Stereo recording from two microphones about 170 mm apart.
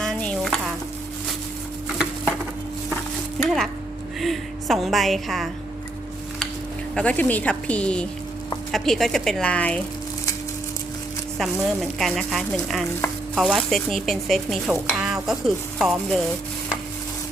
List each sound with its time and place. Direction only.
0.0 s stir: 5° left (ahead or behind)
3.4 s speech: centre (ahead or behind)
4.2 s a sound: centre (ahead or behind)
6.9 s a woman's voice: 5° left (ahead or behind)
11.3 s speech: centre (ahead or behind)